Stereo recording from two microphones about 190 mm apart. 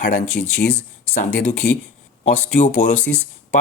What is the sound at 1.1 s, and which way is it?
Speech, 50° left (ahead or behind).